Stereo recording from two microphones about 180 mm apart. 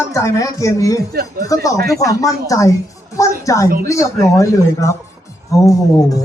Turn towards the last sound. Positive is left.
turn(degrees=20)  # may be behind; listen again after turning